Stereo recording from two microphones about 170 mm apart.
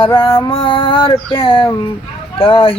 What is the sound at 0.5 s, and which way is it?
Female singing, 30° left (ahead or behind).